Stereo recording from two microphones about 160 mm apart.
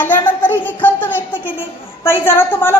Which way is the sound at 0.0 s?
10° left (ahead or behind).